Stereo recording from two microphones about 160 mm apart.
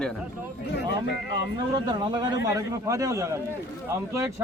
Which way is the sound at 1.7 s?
25° right (ahead or behind).